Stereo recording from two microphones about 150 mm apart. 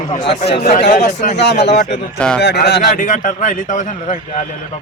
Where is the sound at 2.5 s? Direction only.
90° left; by 4.2 s 55° left (ahead or behind).